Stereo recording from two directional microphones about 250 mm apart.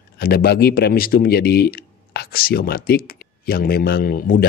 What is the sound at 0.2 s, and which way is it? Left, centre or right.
Speech, left.